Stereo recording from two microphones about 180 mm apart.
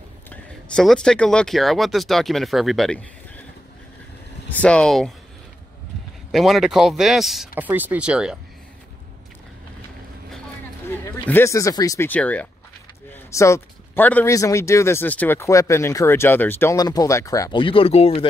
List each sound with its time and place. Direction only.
0.3 s speech: 5° left (ahead or behind)
4.5 s speech: 5° left (ahead or behind)
6.3 s speech: centre (ahead or behind)
11.1 s speech: 15° left (ahead or behind); by 18.2 s 35° left (ahead or behind)